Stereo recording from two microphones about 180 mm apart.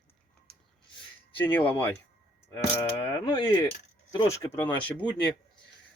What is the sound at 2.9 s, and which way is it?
Speech, 15° left (ahead or behind).